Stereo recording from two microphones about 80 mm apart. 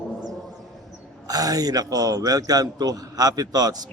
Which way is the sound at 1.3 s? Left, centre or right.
Right.